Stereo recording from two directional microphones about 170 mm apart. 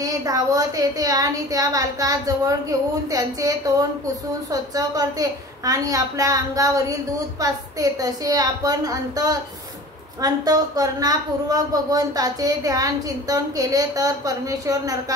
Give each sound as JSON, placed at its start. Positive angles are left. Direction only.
{"t": 0.0, "sound": "speech", "side_deg": -20}